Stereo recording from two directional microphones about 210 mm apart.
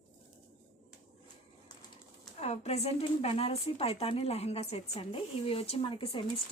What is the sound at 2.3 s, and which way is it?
Speech, 30° left (ahead or behind).